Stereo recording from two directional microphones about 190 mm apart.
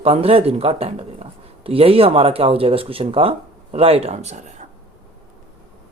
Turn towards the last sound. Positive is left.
turn(degrees=-35)  # may be behind; listen again after turning